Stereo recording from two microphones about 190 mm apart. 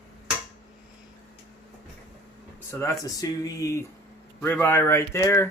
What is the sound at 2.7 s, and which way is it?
Speech, 15° left (ahead or behind).